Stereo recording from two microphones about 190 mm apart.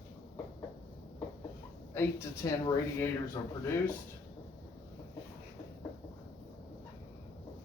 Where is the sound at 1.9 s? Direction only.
15° left (ahead or behind).